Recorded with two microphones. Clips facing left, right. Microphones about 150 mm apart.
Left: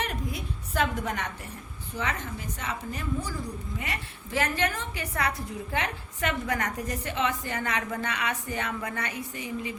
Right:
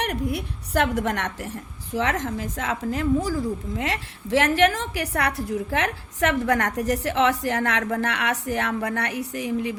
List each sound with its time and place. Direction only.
0.0 s a woman's voice: 70° right (ahead or behind)